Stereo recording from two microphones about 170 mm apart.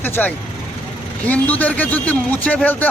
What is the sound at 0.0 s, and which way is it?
A man's voice, 10° left (ahead or behind).